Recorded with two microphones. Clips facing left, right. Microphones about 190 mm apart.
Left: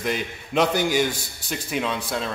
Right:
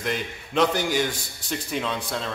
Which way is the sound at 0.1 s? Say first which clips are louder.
Left 1 dB; 10° left (ahead or behind).